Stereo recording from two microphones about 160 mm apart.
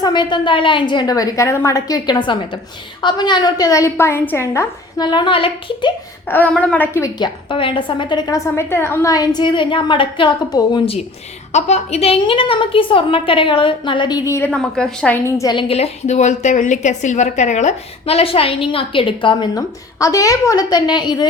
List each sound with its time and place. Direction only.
0.0 s a woman's voice: 30° left (ahead or behind)
5.0 s a woman's voice: 30° left (ahead or behind)
6.2 s a woman's voice: 10° left (ahead or behind)
7.2 s a woman's voice: 30° left (ahead or behind)
8.5 s a woman's voice: 15° left (ahead or behind)
11.5 s a woman's voice: 45° left (ahead or behind)
14.3 s a woman's voice: 15° left (ahead or behind)
14.5 s a woman's voice: 5° left (ahead or behind)
15.4 s a woman's voice: 30° left (ahead or behind)